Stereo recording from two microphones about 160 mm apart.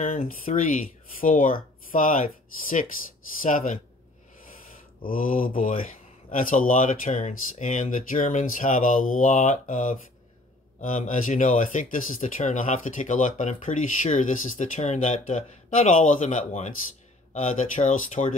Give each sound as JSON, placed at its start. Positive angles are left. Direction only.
{"t": 0.3, "sound": "speech", "side_deg": 55}
{"t": 5.0, "sound": "speech", "side_deg": 60}